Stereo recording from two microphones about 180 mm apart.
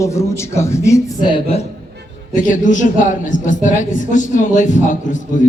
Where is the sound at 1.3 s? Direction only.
35° left (ahead or behind).